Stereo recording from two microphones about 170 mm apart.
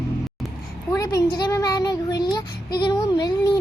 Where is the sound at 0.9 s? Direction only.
20° left (ahead or behind).